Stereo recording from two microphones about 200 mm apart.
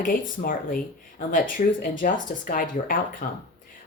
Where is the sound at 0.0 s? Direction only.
45° left (ahead or behind).